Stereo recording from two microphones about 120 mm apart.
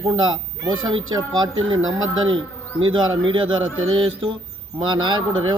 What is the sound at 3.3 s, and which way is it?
A man's voice, 45° right (ahead or behind).